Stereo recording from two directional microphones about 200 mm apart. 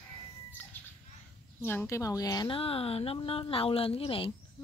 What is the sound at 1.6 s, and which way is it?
A woman's voice, 10° left (ahead or behind).